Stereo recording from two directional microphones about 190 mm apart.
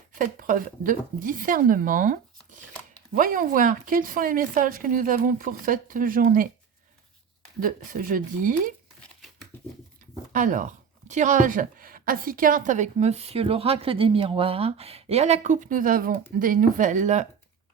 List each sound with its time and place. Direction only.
0.1 s speech: 45° right (ahead or behind)
7.6 s speech: 45° right (ahead or behind)
10.3 s speech: 40° right (ahead or behind)